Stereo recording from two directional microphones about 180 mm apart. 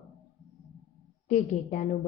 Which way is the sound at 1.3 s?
45° left (ahead or behind).